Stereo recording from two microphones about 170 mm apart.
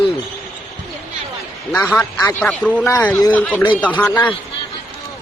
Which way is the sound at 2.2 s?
15° left (ahead or behind).